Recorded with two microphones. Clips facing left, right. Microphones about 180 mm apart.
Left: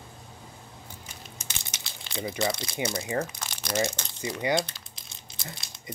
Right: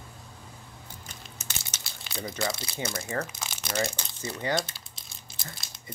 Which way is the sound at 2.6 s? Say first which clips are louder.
Left 3 dB; 15° left (ahead or behind).